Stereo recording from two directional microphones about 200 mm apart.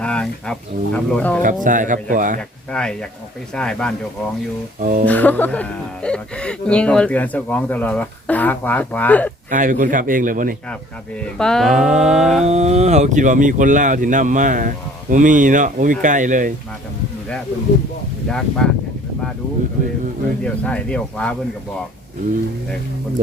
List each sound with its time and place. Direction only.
0.0 s speech: 5° left (ahead or behind)
1.6 s speech: 40° right (ahead or behind)
2.7 s speech: 5° left (ahead or behind)
4.8 s speech: 40° right (ahead or behind)
5.0 s speech: 10° left (ahead or behind)
9.5 s speech: 40° right (ahead or behind)
11.2 s speech: 5° left (ahead or behind)
12.5 s speech: 35° right (ahead or behind)
18.3 s speech: 5° left (ahead or behind)
20.4 s speech: 5° left (ahead or behind)